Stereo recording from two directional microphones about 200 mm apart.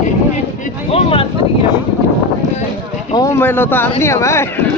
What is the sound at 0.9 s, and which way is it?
Speech, 30° left (ahead or behind).